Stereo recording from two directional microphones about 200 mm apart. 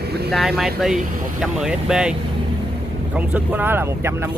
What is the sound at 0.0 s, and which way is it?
Vehicle, 55° right (ahead or behind).